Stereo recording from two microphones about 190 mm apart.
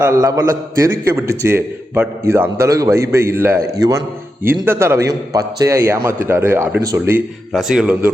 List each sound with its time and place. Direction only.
0.0 s a man's voice: 15° right (ahead or behind)
7.5 s speech: 5° right (ahead or behind)